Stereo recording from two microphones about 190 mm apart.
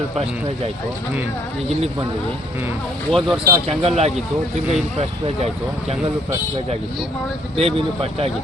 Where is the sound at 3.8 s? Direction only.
35° right (ahead or behind).